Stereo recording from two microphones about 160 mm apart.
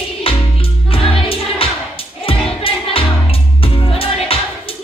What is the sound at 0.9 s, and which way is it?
Music, 35° left (ahead or behind).